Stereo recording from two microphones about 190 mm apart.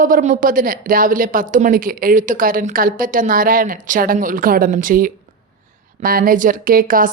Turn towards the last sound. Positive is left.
turn(degrees=-45)  # may be behind; listen again after turning